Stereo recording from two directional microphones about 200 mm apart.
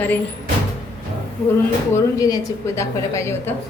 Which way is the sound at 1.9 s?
15° left (ahead or behind).